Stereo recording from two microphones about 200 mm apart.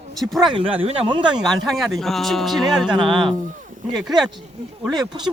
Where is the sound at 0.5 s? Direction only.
30° right (ahead or behind).